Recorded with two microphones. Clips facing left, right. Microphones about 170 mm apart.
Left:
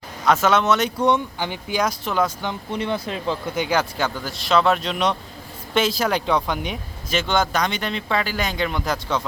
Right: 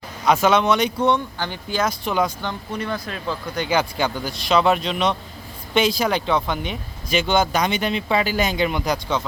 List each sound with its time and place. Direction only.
0.3 s speech: centre (ahead or behind)
1.4 s speech: 15° left (ahead or behind)
2.7 s speech: 25° left (ahead or behind)
3.5 s speech: 5° left (ahead or behind); by 9.2 s 10° right (ahead or behind)